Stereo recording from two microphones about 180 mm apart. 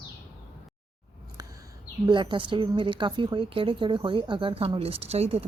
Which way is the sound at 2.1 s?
25° right (ahead or behind).